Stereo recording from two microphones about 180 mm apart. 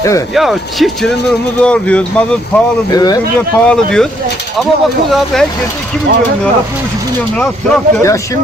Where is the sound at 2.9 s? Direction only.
20° left (ahead or behind).